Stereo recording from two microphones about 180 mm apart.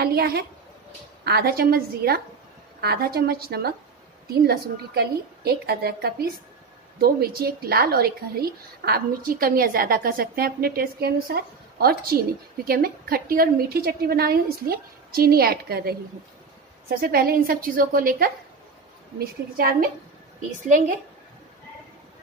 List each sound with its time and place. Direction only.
0.0 s a woman's voice: 60° right (ahead or behind)
20.6 s a woman's voice: 45° right (ahead or behind)